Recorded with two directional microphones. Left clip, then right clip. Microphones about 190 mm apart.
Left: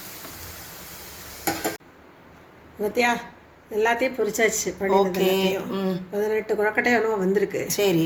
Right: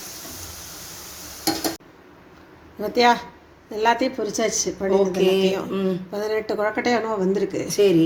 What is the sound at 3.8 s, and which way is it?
Speech, 40° right (ahead or behind).